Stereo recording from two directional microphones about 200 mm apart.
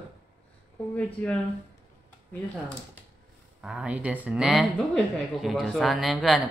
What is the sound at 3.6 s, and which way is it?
Speech, 5° right (ahead or behind).